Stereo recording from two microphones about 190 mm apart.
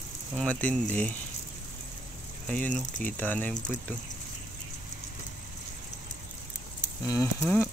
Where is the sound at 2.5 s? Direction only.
5° left (ahead or behind).